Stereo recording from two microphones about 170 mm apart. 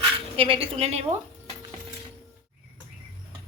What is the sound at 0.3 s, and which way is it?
Speech, 30° right (ahead or behind).